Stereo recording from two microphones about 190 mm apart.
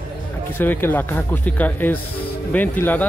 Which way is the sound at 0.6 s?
10° left (ahead or behind).